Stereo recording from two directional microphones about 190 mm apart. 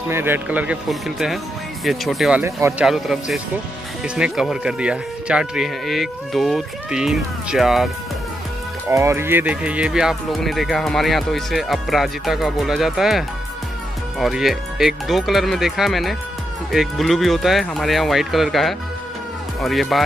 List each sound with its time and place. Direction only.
0.1 s speech: 10° right (ahead or behind)
8.9 s speech: 15° right (ahead or behind)